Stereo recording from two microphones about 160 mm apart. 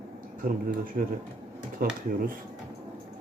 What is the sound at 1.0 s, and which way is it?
Speech, 65° right (ahead or behind).